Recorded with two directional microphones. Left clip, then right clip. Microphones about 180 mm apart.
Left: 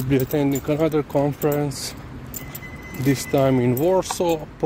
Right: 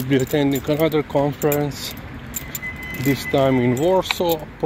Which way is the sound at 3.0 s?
20° left (ahead or behind).